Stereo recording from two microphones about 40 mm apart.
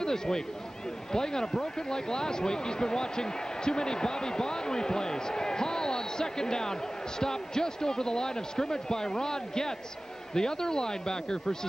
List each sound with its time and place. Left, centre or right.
0.0 s speech: centre